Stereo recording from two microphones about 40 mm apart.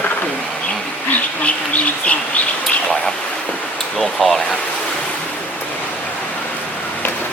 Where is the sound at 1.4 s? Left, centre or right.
Left.